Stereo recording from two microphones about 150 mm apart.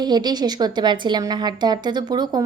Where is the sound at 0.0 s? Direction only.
30° right (ahead or behind).